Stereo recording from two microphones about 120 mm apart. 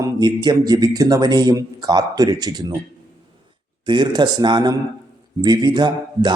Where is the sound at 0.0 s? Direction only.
35° right (ahead or behind).